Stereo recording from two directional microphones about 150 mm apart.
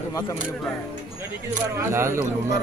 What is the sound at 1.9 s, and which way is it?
Speech, 15° right (ahead or behind).